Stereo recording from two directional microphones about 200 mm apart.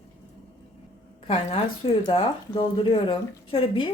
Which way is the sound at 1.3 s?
25° left (ahead or behind).